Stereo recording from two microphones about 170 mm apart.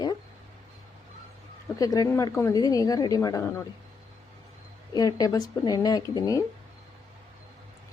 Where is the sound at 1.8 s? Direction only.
20° left (ahead or behind).